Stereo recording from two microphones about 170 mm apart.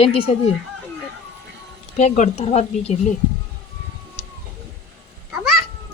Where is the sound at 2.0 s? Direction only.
45° left (ahead or behind).